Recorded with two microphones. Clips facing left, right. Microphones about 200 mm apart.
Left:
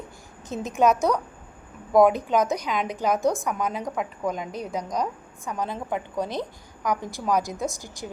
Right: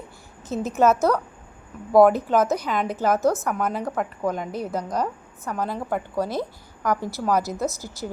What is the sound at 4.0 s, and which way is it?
Speech, 10° left (ahead or behind).